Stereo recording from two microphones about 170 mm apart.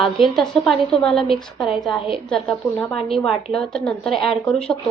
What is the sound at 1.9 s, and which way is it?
Speech, 30° left (ahead or behind).